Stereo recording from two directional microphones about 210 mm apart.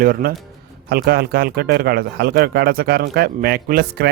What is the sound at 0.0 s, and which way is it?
Speech, 45° right (ahead or behind).